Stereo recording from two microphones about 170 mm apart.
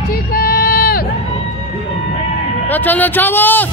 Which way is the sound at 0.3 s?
60° left (ahead or behind).